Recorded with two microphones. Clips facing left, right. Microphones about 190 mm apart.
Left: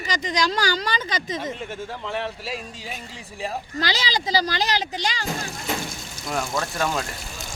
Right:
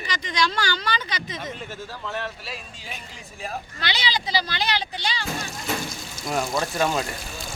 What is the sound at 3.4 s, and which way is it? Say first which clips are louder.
Speech: left 5 dB; 35° left (ahead or behind).